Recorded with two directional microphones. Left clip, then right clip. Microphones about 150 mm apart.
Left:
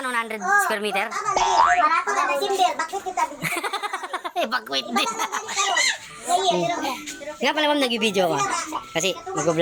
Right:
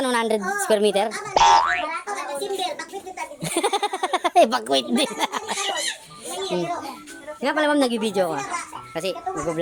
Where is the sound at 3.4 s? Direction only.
65° right (ahead or behind).